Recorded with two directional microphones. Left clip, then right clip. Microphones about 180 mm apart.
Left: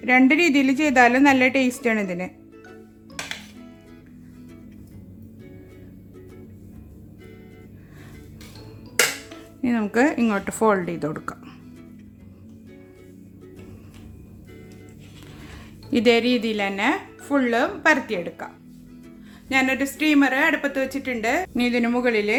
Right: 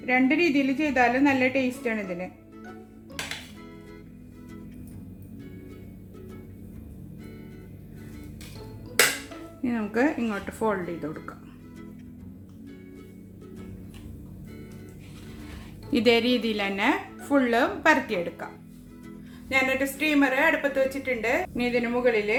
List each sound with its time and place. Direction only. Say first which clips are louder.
0.0 s a woman's voice: left 6 dB; 40° left (ahead or behind)
9.6 s a woman's voice: left 5 dB; 30° left (ahead or behind)
15.9 s speech: left 3 dB; 25° left (ahead or behind)
19.5 s a woman's voice: left 3 dB; 45° left (ahead or behind)